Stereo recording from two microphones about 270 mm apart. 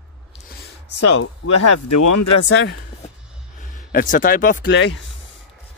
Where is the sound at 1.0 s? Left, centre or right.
Left.